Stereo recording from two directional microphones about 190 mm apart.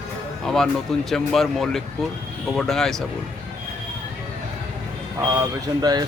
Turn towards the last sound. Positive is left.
turn(degrees=-20)  # may be behind; listen again after turning